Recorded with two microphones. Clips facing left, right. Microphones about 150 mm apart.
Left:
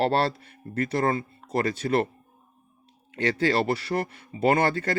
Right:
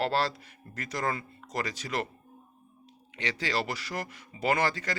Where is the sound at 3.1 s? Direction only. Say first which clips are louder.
Left 10 dB; 45° left (ahead or behind).